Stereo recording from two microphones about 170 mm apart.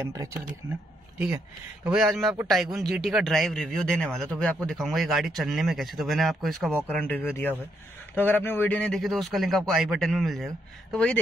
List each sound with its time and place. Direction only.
0.0 s speech: 15° right (ahead or behind)
1.1 s speech: 5° right (ahead or behind)